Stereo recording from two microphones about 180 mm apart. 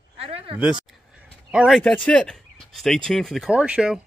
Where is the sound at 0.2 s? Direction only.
30° right (ahead or behind).